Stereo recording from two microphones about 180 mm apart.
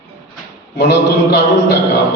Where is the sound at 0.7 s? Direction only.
70° left (ahead or behind).